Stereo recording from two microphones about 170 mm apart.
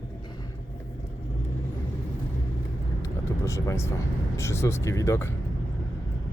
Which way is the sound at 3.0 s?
15° left (ahead or behind).